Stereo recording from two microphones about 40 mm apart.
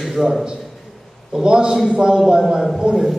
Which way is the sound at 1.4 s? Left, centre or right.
Right.